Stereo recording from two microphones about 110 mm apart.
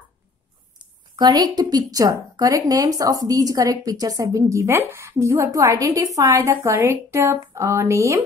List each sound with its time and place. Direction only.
0.7 s a woman's voice: 40° right (ahead or behind)